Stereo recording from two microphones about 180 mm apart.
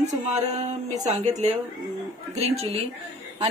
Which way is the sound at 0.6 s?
40° right (ahead or behind).